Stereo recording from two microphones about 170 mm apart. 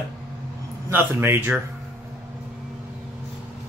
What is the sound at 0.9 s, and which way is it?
Speech, 10° right (ahead or behind).